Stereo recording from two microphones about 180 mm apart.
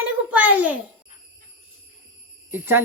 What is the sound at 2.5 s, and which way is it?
Speech, 15° right (ahead or behind).